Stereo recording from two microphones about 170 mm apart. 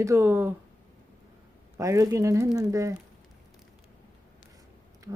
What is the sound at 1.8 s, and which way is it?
Speech, 20° right (ahead or behind).